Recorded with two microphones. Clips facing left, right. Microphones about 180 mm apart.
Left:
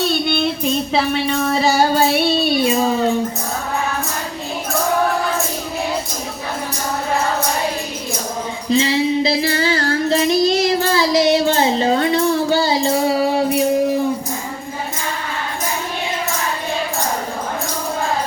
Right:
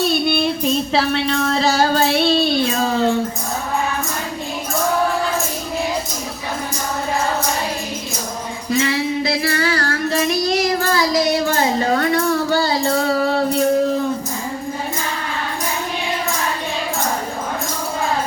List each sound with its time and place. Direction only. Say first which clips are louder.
0.0 s music: right 1 dB; 5° right (ahead or behind); by 3.2 s 15° left (ahead or behind)
8.7 s child singing: left 3 dB; 25° left (ahead or behind)